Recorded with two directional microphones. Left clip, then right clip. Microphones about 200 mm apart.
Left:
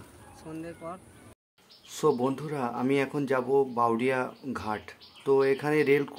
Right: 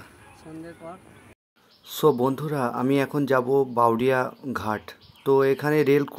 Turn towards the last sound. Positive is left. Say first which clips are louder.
# right 4 dB
turn(degrees=-25)  # may be behind; listen again after turning